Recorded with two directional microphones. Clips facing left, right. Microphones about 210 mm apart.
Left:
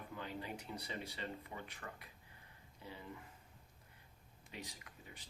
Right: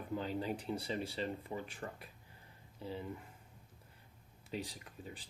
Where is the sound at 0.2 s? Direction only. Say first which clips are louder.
Right 5 dB; 30° right (ahead or behind).